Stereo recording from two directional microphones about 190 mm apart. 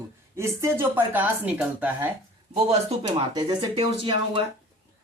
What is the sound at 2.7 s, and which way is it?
Speech, 30° right (ahead or behind).